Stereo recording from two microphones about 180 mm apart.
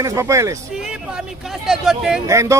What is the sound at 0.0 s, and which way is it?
Speech, 15° right (ahead or behind).